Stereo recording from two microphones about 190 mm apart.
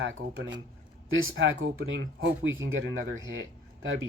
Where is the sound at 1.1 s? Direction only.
90° right.